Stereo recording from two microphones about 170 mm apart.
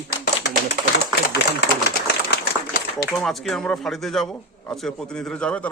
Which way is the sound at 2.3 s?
60° left (ahead or behind).